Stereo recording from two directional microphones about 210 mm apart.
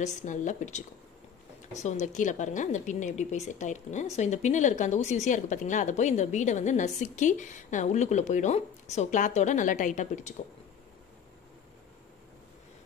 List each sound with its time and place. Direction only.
0.0 s a woman's voice: 35° left (ahead or behind)